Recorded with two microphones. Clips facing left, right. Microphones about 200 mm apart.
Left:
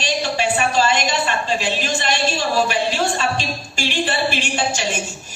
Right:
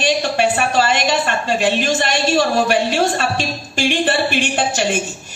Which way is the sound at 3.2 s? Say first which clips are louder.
Right 2 dB; 50° right (ahead or behind).